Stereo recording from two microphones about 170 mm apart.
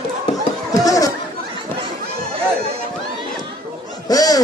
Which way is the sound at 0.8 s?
20° left (ahead or behind).